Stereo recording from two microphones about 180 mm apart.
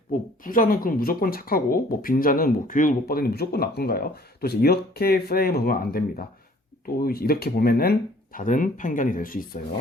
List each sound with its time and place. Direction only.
0.1 s speech: 50° left (ahead or behind)